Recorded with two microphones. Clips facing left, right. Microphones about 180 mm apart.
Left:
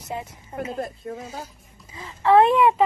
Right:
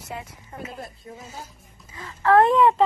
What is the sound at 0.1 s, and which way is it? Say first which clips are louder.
Speech: left 4 dB; 20° left (ahead or behind).